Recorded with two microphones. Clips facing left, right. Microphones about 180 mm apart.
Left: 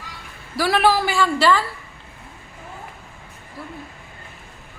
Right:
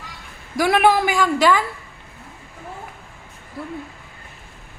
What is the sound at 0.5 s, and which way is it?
A man's voice, 20° right (ahead or behind).